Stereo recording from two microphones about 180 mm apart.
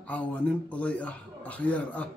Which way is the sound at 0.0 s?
10° left (ahead or behind).